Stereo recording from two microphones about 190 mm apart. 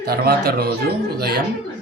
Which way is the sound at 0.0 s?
55° right (ahead or behind).